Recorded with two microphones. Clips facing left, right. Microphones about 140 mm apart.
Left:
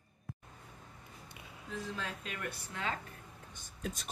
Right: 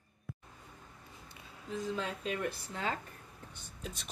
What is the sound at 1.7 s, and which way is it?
Speech, 30° right (ahead or behind).